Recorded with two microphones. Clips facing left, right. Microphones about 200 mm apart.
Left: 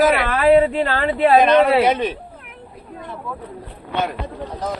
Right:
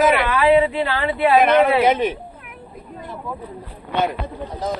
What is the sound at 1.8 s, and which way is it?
Speech, 10° right (ahead or behind).